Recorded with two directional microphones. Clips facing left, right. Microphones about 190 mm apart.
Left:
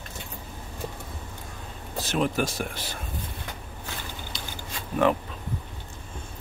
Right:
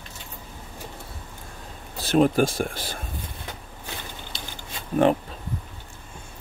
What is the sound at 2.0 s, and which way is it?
Speech, 35° right (ahead or behind).